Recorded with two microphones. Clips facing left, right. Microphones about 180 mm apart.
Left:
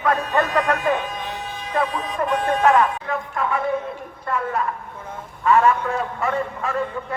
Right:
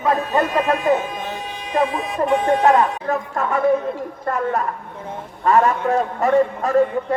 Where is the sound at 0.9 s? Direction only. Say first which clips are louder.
Right 4 dB; 45° right (ahead or behind).